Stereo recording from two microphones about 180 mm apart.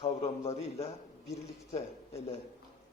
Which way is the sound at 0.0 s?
35° left (ahead or behind).